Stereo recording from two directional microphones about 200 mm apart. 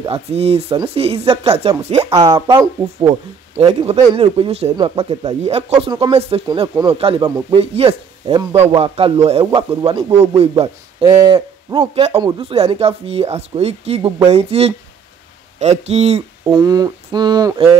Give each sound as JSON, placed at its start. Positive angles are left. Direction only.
{"t": 0.0, "sound": "speech", "side_deg": -30}
{"t": 3.5, "sound": "speech", "side_deg": -30}
{"t": 16.4, "sound": "speech", "side_deg": -20}